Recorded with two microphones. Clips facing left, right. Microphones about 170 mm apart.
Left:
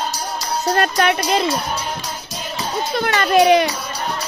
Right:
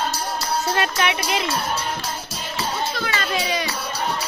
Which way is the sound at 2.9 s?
60° left (ahead or behind).